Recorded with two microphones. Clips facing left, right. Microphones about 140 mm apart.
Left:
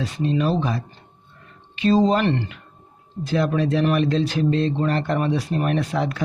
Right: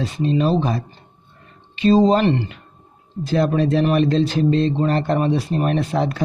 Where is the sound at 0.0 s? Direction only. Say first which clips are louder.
Right 3 dB; 25° right (ahead or behind).